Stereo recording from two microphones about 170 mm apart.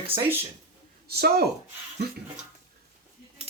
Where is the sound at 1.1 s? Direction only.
70° right (ahead or behind).